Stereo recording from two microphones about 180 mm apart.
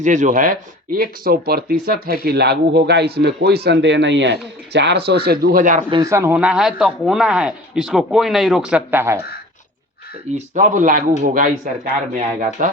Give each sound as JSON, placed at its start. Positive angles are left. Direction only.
{"t": 0.0, "sound": "speech", "side_deg": -45}
{"t": 5.9, "sound": "speech", "side_deg": -20}
{"t": 10.3, "sound": "speech", "side_deg": -40}